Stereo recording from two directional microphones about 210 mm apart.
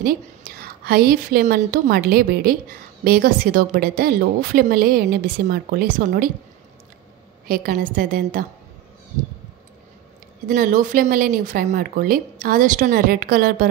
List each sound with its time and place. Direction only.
0.0 s a woman's voice: 45° right (ahead or behind)
7.4 s a woman's voice: 45° right (ahead or behind)
10.5 s a woman's voice: 40° right (ahead or behind)